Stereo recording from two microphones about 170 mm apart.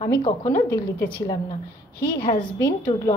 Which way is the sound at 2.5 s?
20° left (ahead or behind).